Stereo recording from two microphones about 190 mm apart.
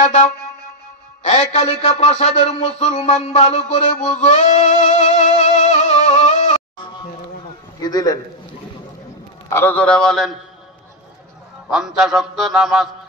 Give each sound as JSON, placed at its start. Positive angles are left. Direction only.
{"t": 0.0, "sound": "music", "side_deg": 40}
{"t": 1.2, "sound": "a sound", "side_deg": 40}
{"t": 7.8, "sound": "a man's voice", "side_deg": 20}
{"t": 9.5, "sound": "a man's voice", "side_deg": 10}
{"t": 11.7, "sound": "a man's voice", "side_deg": -5}